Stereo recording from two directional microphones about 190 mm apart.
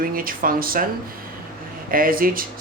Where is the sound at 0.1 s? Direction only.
50° right (ahead or behind).